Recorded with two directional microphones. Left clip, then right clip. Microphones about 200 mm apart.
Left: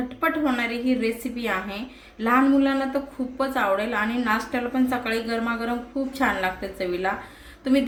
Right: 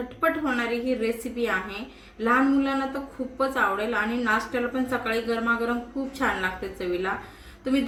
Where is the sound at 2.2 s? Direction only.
30° left (ahead or behind).